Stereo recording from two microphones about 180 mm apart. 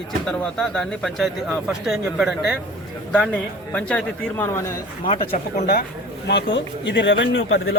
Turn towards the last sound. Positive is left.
turn(degrees=90)